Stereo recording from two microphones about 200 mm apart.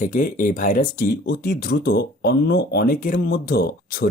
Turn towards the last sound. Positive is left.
turn(degrees=50)  # may be behind; listen again after turning